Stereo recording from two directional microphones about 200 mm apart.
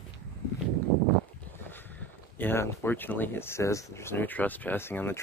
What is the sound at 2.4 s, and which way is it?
Speech, 10° left (ahead or behind).